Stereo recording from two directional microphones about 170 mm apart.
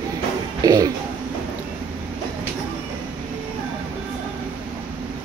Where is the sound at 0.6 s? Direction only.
20° right (ahead or behind).